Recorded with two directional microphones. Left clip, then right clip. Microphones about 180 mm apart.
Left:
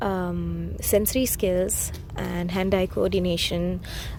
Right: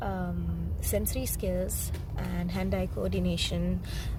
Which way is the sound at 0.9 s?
45° left (ahead or behind).